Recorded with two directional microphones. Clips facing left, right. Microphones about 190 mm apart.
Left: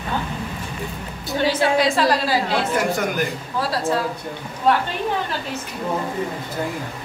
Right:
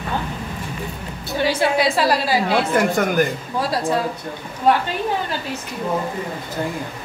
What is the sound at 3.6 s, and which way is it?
Speech, 15° right (ahead or behind).